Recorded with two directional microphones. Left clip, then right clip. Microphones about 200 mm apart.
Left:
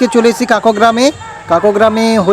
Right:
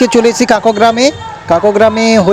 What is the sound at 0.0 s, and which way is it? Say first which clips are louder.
Speech: right 2 dB; 20° right (ahead or behind).